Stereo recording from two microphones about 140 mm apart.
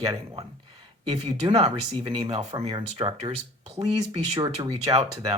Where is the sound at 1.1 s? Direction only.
30° right (ahead or behind).